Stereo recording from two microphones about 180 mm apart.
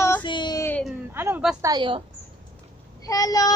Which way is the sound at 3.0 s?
20° left (ahead or behind).